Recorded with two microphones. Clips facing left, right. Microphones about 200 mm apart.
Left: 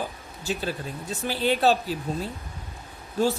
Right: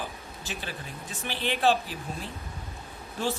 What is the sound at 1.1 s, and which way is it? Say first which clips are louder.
Speech: left 7 dB; 40° left (ahead or behind).